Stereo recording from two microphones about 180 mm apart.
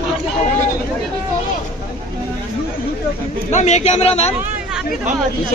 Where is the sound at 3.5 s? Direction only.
40° left (ahead or behind).